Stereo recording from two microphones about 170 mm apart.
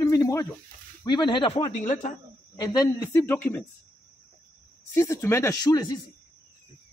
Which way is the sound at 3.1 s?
10° left (ahead or behind).